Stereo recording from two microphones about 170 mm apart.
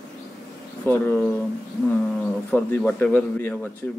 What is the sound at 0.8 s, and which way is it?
Speech, 15° left (ahead or behind).